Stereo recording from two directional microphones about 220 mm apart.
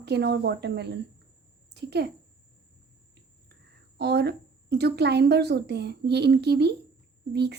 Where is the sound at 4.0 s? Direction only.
50° right (ahead or behind).